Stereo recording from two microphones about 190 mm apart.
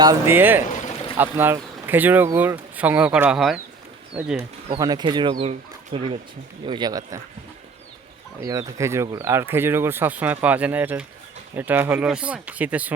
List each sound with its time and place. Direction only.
0.0 s speech: 15° right (ahead or behind)
0.7 s a sound: 40° left (ahead or behind)
1.2 s speech: 10° right (ahead or behind)
4.8 s speech: 20° right (ahead or behind)
8.4 s speech: 20° right (ahead or behind)